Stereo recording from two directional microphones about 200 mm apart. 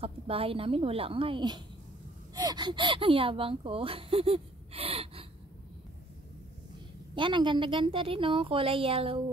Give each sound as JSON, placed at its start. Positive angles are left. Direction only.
{"t": 0.0, "sound": "speech", "side_deg": -30}
{"t": 7.2, "sound": "speech", "side_deg": -25}